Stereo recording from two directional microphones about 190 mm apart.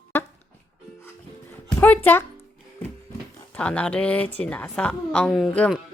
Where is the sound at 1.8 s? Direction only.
10° left (ahead or behind).